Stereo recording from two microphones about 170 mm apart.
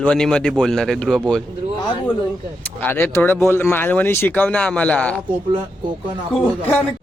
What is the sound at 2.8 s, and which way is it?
Speech, 10° left (ahead or behind).